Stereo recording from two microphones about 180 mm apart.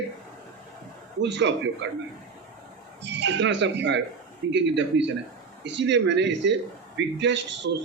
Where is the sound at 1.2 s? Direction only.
80° right.